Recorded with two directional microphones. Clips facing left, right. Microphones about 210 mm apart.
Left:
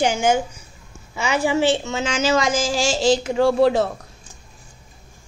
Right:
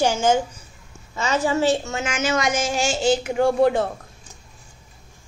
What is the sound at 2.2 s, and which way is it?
Speech, 90° left.